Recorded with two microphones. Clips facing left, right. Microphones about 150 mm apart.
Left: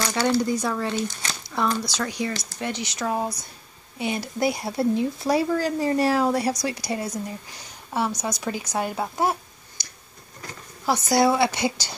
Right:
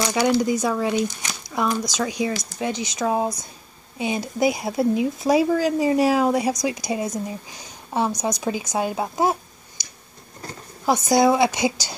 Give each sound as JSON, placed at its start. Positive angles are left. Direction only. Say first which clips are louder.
{"t": 0.0, "sound": "a woman's voice", "louder": "right 3 dB", "side_deg": -15}
{"t": 10.9, "sound": "speech", "louder": "right 3 dB", "side_deg": -20}